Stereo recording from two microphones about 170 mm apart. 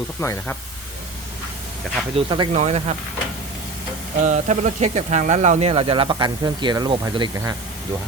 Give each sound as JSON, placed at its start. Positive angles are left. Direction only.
{"t": 0.2, "sound": "speech", "side_deg": 15}
{"t": 2.1, "sound": "speech", "side_deg": -25}
{"t": 2.5, "sound": "speech", "side_deg": -40}
{"t": 4.2, "sound": "speech", "side_deg": -45}